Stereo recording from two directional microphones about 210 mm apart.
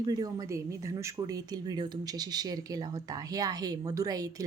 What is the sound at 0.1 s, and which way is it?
Speech, 15° right (ahead or behind).